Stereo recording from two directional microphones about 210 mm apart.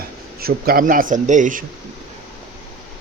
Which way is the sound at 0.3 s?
45° right (ahead or behind).